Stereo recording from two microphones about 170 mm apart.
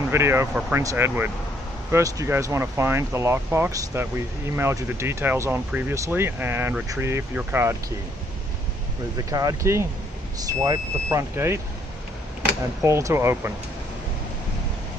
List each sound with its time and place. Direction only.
0.1 s speech: 15° right (ahead or behind)
9.3 s speech: 20° right (ahead or behind)
12.8 s speech: 15° right (ahead or behind)